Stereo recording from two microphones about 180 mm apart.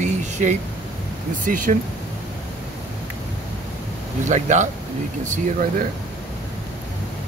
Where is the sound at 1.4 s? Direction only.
50° right (ahead or behind).